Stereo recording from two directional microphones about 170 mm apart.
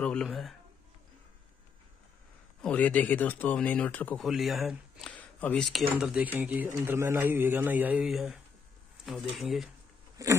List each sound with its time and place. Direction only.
0.0 s speech: 5° left (ahead or behind)
2.6 s speech: 10° left (ahead or behind)
4.3 s speech: centre (ahead or behind)
9.0 s a sound: 5° right (ahead or behind)
9.3 s speech: centre (ahead or behind)
10.2 s biting: 20° right (ahead or behind)